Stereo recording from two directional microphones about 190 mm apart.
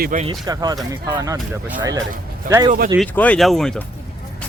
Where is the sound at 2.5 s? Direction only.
20° right (ahead or behind).